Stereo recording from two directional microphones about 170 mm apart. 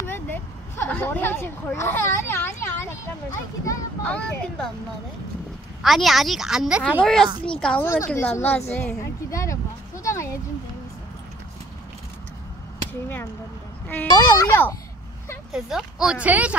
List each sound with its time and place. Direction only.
0.0 s a sound: 15° left (ahead or behind)
4.0 s a woman's voice: 5° left (ahead or behind)
5.8 s a woman's voice: centre (ahead or behind); by 10.4 s 15° left (ahead or behind)
13.8 s a child's voice: 10° left (ahead or behind)
15.5 s speech: 5° right (ahead or behind)